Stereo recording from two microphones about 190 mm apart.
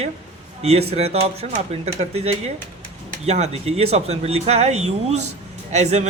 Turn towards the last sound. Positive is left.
turn(degrees=-35)  # may be behind; listen again after turning